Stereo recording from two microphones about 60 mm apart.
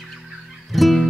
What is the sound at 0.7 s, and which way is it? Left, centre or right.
Music, centre.